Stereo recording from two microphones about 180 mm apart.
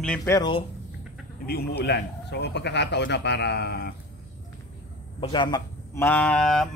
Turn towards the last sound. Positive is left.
turn(degrees=5)  # may be behind; listen again after turning